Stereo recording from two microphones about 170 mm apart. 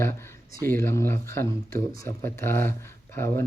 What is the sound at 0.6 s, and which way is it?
Speech, 15° left (ahead or behind).